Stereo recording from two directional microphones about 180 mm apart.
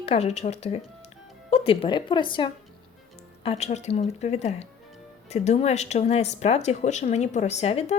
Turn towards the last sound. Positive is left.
turn(degrees=35)  # may be behind; listen again after turning